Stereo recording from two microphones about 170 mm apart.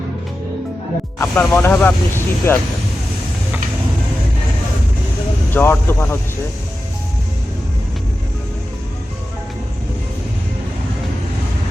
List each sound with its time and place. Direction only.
1.2 s speech: 10° left (ahead or behind)
5.5 s speech: 15° left (ahead or behind)